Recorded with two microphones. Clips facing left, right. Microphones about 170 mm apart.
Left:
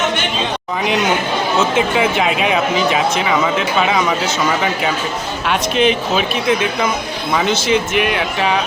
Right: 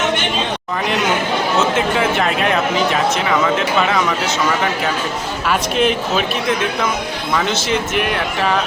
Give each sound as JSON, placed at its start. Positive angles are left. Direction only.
{"t": 2.0, "sound": "speech", "side_deg": 5}
{"t": 5.5, "sound": "speech", "side_deg": 0}